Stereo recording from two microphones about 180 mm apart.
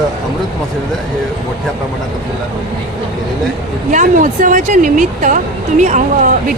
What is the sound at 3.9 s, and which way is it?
A woman's voice, 45° right (ahead or behind).